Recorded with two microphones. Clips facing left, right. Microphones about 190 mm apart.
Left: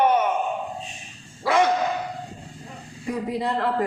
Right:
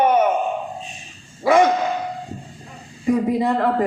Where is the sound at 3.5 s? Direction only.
50° right (ahead or behind).